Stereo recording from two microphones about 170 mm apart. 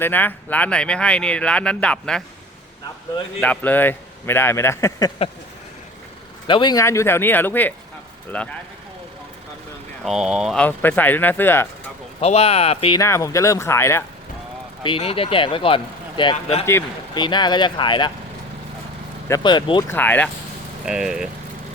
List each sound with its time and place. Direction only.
0.0 s speech: 10° left (ahead or behind)
3.4 s speech: 10° left (ahead or behind)
6.5 s speech: 25° left (ahead or behind); by 8.5 s 5° left (ahead or behind)
10.0 s speech: 5° right (ahead or behind); by 11.7 s 15° left (ahead or behind)
12.2 s speech: 35° left (ahead or behind)
13.0 s speech: 20° left (ahead or behind)
14.8 s speech: 30° left (ahead or behind)
19.3 s speech: 25° left (ahead or behind)
19.9 s speech: 10° left (ahead or behind)
20.8 s speech: 5° right (ahead or behind)